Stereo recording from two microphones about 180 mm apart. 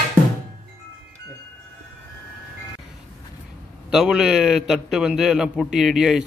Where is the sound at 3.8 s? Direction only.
5° right (ahead or behind).